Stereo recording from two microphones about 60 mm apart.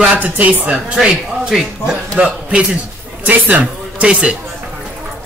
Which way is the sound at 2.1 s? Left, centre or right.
Right.